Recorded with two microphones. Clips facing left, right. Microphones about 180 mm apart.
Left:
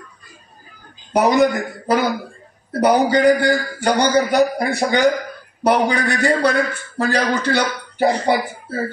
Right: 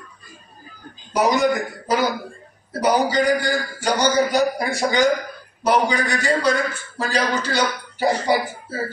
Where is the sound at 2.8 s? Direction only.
60° left (ahead or behind).